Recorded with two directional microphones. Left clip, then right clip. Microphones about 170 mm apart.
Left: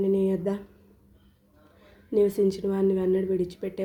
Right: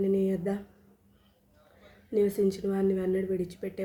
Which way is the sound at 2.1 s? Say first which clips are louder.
Left 4 dB; 20° left (ahead or behind).